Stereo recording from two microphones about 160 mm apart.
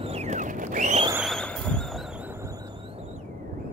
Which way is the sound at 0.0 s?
40° right (ahead or behind).